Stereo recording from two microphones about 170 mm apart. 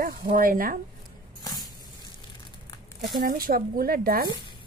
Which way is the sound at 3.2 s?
60° right (ahead or behind).